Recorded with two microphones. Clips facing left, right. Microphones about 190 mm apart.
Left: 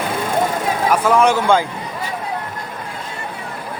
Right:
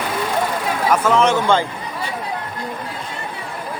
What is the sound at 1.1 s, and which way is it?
Speech, 10° left (ahead or behind).